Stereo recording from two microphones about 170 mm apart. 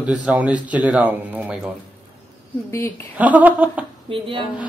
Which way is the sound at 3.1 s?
10° right (ahead or behind).